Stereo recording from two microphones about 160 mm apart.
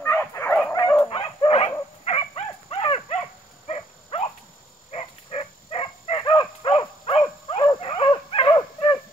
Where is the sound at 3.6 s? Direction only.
35° left (ahead or behind).